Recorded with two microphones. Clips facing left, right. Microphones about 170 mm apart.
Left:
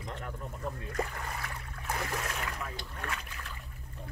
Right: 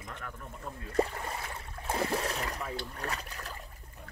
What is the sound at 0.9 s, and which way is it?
Speech, 30° right (ahead or behind).